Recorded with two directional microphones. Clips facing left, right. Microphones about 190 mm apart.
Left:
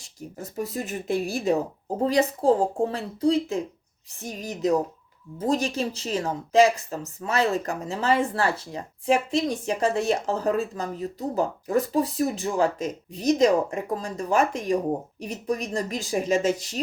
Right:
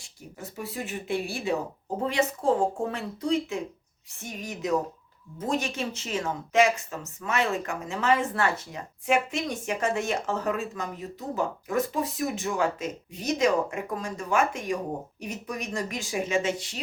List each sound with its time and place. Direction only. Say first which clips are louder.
0.0 s speech: left 4 dB; 40° left (ahead or behind)